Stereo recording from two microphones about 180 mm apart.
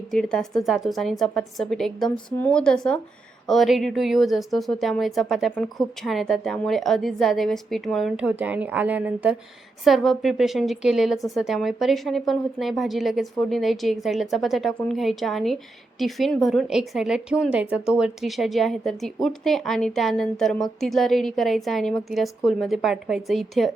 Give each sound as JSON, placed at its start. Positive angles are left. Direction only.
{"t": 0.1, "sound": "a woman's voice", "side_deg": 5}